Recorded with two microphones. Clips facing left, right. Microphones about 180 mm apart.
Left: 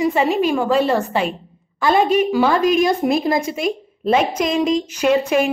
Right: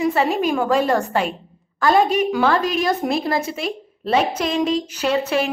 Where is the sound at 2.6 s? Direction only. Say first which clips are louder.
Left 6 dB; 35° right (ahead or behind).